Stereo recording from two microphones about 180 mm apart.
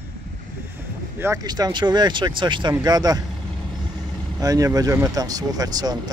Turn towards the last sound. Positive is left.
turn(degrees=-20)  # may be behind; listen again after turning